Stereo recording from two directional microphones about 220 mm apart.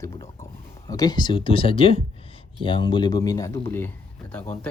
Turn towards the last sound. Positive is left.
turn(degrees=5)  # may be behind; listen again after turning